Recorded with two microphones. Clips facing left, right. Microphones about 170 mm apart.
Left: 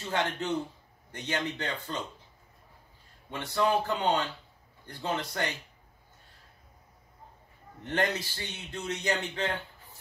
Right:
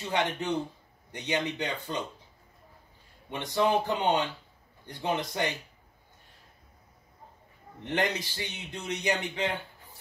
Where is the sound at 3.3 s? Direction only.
20° right (ahead or behind).